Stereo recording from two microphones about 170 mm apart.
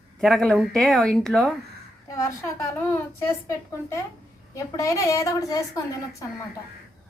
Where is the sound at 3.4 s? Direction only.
15° left (ahead or behind).